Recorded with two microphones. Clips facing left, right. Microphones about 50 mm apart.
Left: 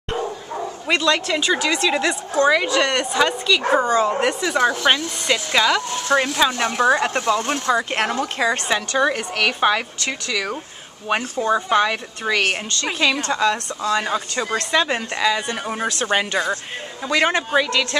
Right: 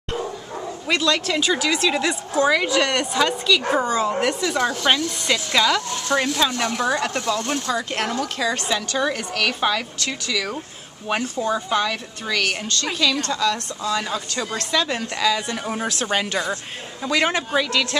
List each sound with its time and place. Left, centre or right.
0.8 s speech: centre
3.8 s speech: centre